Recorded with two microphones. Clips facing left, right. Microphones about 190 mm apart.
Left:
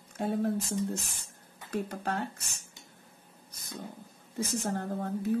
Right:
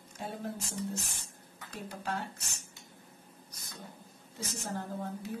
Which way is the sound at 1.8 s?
55° left (ahead or behind).